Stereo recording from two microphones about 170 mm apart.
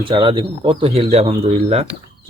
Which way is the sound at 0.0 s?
30° right (ahead or behind).